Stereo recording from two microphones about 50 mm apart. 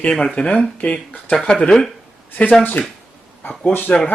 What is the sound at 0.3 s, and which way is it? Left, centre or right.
Speech, centre.